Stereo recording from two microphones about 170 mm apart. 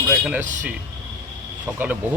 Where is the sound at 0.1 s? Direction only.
5° right (ahead or behind).